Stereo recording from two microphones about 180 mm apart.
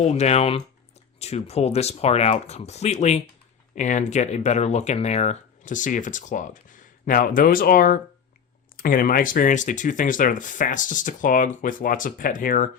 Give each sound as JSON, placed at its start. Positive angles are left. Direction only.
{"t": 0.0, "sound": "speech", "side_deg": 35}